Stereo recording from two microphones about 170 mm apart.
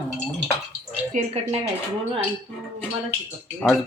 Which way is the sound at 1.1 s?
40° right (ahead or behind).